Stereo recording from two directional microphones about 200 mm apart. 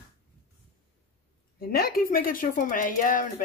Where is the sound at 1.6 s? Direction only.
50° left (ahead or behind).